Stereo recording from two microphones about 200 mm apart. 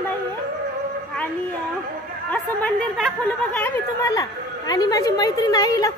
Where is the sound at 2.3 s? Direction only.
5° left (ahead or behind).